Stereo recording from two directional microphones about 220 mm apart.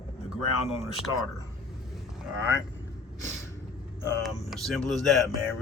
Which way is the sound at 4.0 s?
10° left (ahead or behind).